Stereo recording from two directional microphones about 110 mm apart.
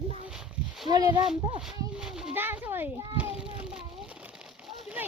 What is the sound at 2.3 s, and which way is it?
Cat, 20° right (ahead or behind).